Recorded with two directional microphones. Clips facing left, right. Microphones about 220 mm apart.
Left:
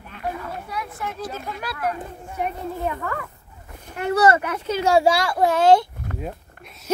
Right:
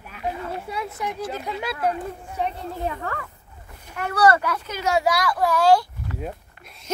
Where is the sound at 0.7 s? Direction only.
25° right (ahead or behind).